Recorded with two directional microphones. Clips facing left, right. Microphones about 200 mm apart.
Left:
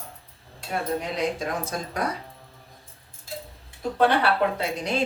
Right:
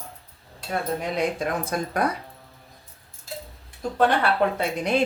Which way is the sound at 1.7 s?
55° right (ahead or behind).